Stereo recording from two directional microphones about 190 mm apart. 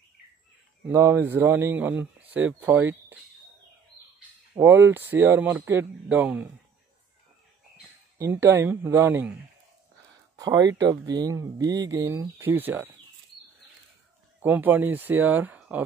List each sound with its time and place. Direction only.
0.8 s speech: 10° right (ahead or behind)
4.6 s speech: 10° right (ahead or behind)
8.2 s speech: 15° right (ahead or behind)
10.3 s speech: 20° right (ahead or behind)
14.4 s speech: 10° right (ahead or behind)